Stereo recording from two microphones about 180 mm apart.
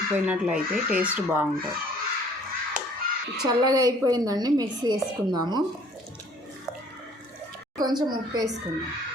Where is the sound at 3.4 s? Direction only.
20° right (ahead or behind).